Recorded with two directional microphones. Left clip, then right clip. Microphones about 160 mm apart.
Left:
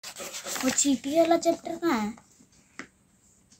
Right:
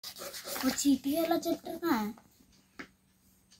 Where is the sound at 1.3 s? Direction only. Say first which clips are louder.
Left 8 dB; 35° left (ahead or behind).